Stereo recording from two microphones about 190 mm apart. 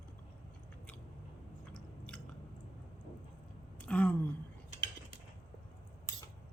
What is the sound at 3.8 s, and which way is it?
Speech, 5° left (ahead or behind).